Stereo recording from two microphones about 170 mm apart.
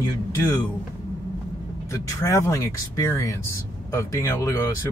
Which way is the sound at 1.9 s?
20° left (ahead or behind).